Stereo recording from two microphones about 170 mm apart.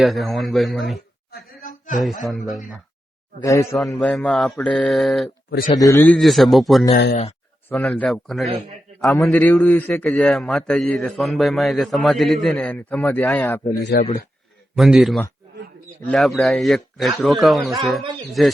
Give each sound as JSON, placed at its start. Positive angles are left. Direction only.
{"t": 0.0, "sound": "a man's voice", "side_deg": 0}
{"t": 1.3, "sound": "a sound", "side_deg": 55}
{"t": 2.2, "sound": "a man's voice", "side_deg": 0}
{"t": 3.4, "sound": "a man's voice", "side_deg": 20}
{"t": 3.8, "sound": "a man's voice", "side_deg": 0}
{"t": 5.5, "sound": "speech", "side_deg": 60}
{"t": 5.7, "sound": "a man's voice", "side_deg": 20}
{"t": 6.1, "sound": "a man's voice", "side_deg": 0}
{"t": 6.9, "sound": "speech", "side_deg": 65}
{"t": 7.9, "sound": "a man's voice", "side_deg": 0}
{"t": 13.9, "sound": "speech", "side_deg": 70}
{"t": 14.8, "sound": "a man's voice", "side_deg": 0}